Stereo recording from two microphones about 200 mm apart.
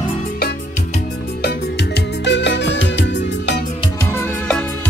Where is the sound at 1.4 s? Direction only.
60° left (ahead or behind).